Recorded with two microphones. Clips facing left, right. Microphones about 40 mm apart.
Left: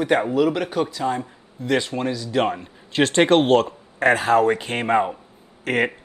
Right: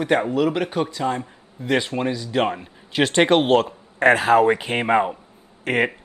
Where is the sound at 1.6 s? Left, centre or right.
Centre.